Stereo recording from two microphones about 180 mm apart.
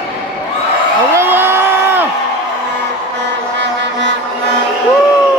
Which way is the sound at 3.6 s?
80° right.